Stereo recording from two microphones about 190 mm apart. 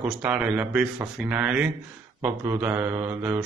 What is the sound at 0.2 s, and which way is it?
Mantra, 5° right (ahead or behind).